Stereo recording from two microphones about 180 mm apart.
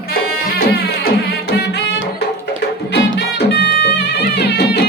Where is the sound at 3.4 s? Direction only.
70° left (ahead or behind).